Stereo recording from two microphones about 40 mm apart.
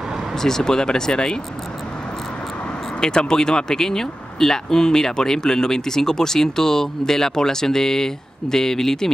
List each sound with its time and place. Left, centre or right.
0.4 s speech: centre
3.0 s speech: centre